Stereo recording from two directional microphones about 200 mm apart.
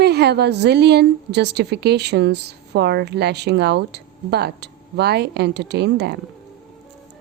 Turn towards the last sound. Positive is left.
turn(degrees=-55)  # may be behind; listen again after turning